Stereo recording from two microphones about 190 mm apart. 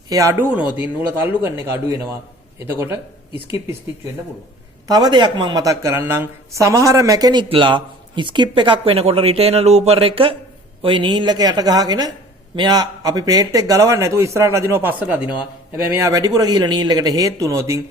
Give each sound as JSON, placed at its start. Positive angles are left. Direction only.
{"t": 0.1, "sound": "a man's voice", "side_deg": -15}
{"t": 4.9, "sound": "a woman's voice", "side_deg": -20}